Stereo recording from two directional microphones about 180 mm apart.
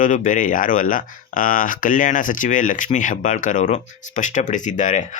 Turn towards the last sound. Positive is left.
turn(degrees=45)  # may be behind; listen again after turning